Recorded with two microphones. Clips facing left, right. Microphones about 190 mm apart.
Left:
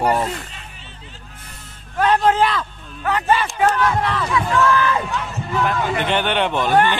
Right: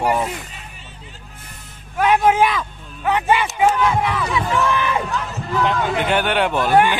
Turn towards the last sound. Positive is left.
turn(degrees=-10)  # may be behind; listen again after turning